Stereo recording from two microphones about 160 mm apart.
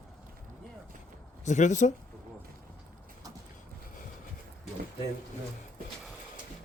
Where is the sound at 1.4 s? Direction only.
50° left (ahead or behind).